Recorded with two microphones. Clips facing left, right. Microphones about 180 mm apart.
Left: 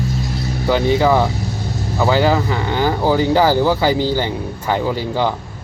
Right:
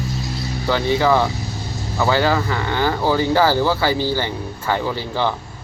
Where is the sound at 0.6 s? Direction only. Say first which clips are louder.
Left 3 dB; 15° left (ahead or behind).